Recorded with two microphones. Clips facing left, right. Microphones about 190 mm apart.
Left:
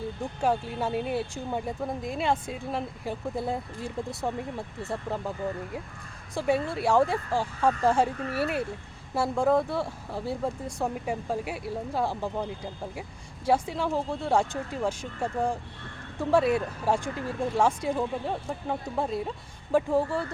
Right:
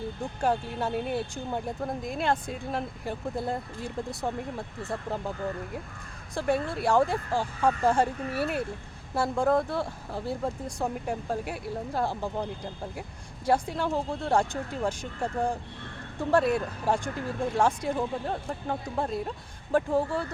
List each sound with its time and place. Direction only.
0.4 s speech: 5° left (ahead or behind)
6.3 s speech: 5° left (ahead or behind)